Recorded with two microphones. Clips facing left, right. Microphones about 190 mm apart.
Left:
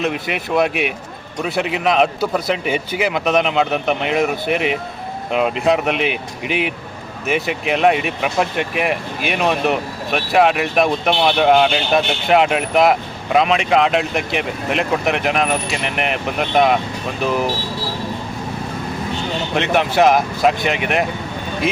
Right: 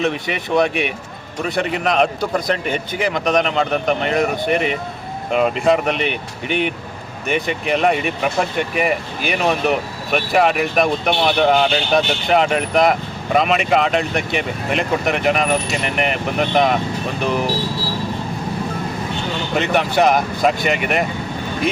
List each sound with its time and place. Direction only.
0.0 s speech: centre (ahead or behind)
19.5 s speech: centre (ahead or behind)